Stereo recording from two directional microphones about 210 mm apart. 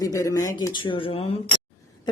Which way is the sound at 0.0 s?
15° left (ahead or behind).